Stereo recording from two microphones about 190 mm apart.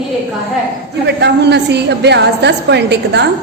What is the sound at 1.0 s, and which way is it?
A woman's voice, 65° right (ahead or behind).